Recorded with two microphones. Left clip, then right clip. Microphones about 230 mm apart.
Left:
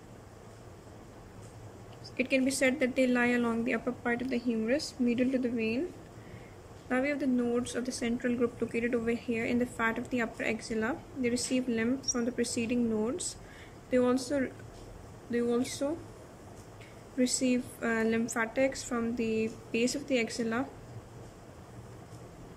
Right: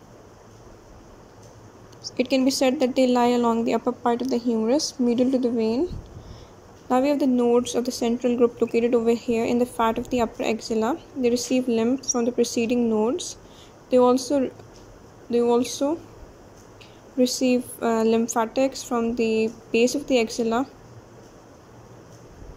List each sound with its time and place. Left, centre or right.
2.1 s speech: centre
6.9 s speech: centre
17.2 s speech: centre